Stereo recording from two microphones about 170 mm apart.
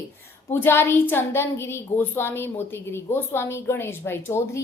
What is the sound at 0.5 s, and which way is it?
A woman's voice, 15° left (ahead or behind).